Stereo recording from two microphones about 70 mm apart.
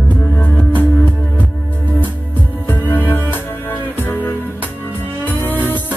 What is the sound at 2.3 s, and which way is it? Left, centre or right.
Music, left.